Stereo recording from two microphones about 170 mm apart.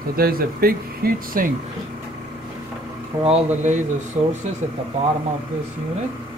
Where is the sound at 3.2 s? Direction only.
35° right (ahead or behind).